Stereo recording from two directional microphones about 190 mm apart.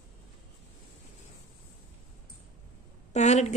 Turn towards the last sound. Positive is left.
turn(degrees=35)  # may be behind; listen again after turning